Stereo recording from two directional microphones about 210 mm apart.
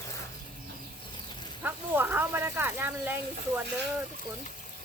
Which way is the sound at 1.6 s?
10° right (ahead or behind).